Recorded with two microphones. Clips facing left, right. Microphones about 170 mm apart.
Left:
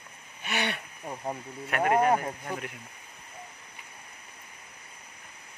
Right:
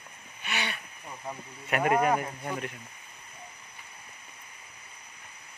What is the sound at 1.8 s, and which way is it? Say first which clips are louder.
Speech: left 2 dB; 25° left (ahead or behind).